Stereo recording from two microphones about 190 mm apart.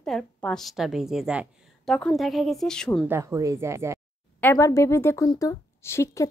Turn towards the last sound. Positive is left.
turn(degrees=15)  # may be behind; listen again after turning